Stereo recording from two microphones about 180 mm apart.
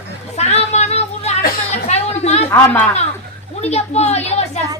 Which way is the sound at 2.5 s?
10° left (ahead or behind).